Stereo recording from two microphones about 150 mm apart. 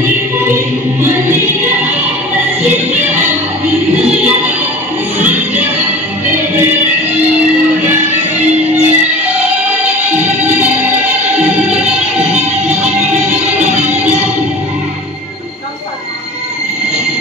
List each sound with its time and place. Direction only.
1.0 s music: 15° right (ahead or behind)
5.2 s music: 10° right (ahead or behind)
7.8 s music: 10° right (ahead or behind)
10.1 s music: 10° right (ahead or behind)
12.3 s music: 45° right (ahead or behind)